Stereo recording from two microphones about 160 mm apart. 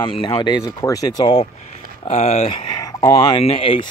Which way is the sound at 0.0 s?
30° left (ahead or behind).